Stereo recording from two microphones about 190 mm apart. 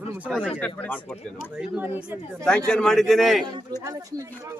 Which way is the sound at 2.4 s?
5° left (ahead or behind).